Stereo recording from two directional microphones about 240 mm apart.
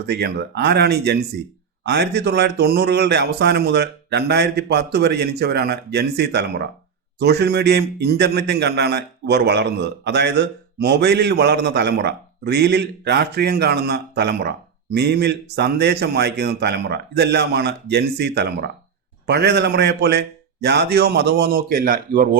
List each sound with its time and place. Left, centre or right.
0.0 s a man's voice: right